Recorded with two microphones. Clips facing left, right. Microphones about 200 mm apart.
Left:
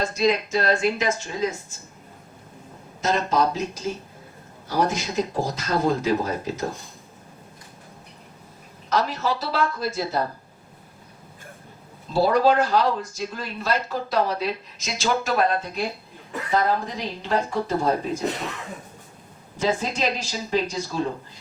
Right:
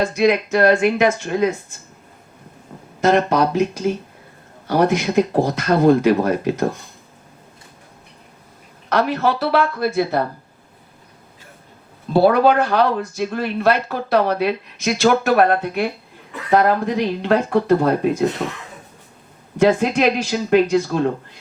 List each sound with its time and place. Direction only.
0.0 s speech: 65° right (ahead or behind)
3.0 s speech: 60° right (ahead or behind)
8.9 s speech: 60° right (ahead or behind)
12.1 s speech: 60° right (ahead or behind)
19.5 s speech: 65° right (ahead or behind)